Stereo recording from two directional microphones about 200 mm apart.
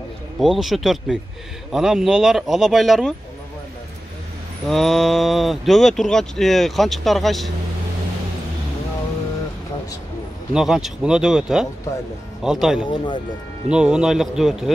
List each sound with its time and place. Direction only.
0.4 s speech: centre (ahead or behind)
4.6 s speech: centre (ahead or behind)
10.5 s speech: centre (ahead or behind)
12.8 s speech: 25° left (ahead or behind)
13.7 s speech: 5° right (ahead or behind)